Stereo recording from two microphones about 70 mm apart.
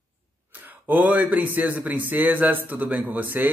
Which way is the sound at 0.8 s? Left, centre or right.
Right.